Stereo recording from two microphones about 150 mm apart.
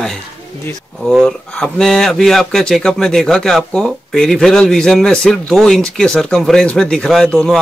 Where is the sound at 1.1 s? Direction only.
5° left (ahead or behind).